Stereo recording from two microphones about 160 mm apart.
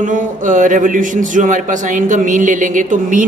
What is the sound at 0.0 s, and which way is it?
A man's voice, 55° right (ahead or behind).